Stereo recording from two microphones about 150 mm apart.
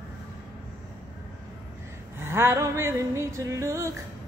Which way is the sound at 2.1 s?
15° right (ahead or behind).